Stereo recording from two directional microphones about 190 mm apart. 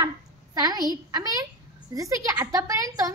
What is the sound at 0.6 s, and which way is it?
A woman's voice, 20° right (ahead or behind).